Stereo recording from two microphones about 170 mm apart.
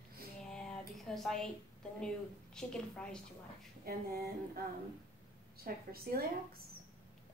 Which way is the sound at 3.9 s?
65° right (ahead or behind).